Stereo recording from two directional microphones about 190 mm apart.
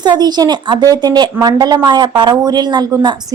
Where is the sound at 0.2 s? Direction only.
20° right (ahead or behind).